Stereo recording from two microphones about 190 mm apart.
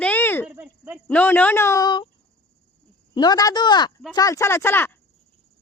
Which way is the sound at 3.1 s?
20° left (ahead or behind).